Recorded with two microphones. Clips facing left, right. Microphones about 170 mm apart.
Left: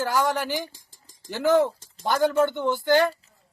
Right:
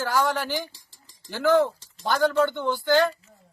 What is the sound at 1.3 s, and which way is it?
Speech, 20° left (ahead or behind).